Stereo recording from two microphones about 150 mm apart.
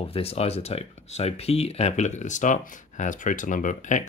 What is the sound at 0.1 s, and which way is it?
Speech, 40° left (ahead or behind).